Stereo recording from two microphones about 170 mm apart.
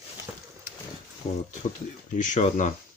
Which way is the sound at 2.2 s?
45° left (ahead or behind).